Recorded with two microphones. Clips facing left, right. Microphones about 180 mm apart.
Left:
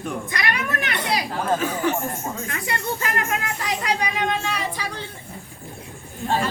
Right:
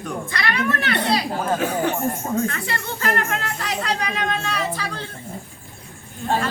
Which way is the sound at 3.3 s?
10° left (ahead or behind).